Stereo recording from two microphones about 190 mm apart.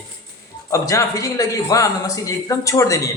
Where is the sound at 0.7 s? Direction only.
15° left (ahead or behind).